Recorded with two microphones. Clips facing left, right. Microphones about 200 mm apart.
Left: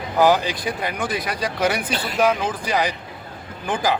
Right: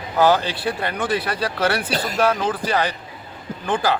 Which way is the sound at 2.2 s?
15° left (ahead or behind).